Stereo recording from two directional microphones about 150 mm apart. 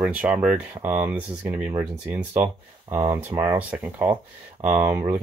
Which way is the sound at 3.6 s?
10° right (ahead or behind).